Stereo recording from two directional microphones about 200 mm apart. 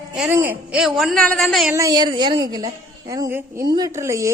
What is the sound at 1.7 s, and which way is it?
A woman's voice, 15° right (ahead or behind).